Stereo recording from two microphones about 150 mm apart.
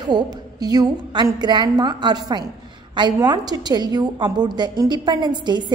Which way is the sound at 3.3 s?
25° right (ahead or behind).